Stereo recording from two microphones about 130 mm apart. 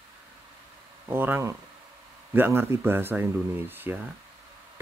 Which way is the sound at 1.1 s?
15° right (ahead or behind).